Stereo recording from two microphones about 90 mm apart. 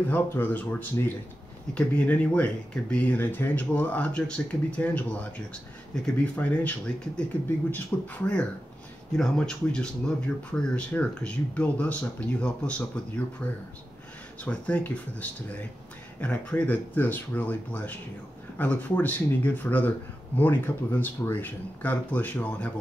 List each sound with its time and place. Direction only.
0.1 s speech: 25° left (ahead or behind)
7.7 s speech: 15° left (ahead or behind)